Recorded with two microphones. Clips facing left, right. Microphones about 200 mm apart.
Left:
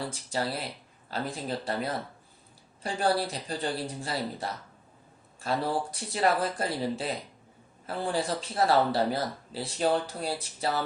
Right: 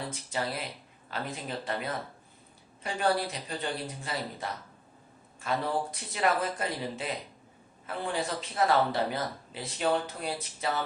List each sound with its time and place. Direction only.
0.1 s speech: 35° left (ahead or behind)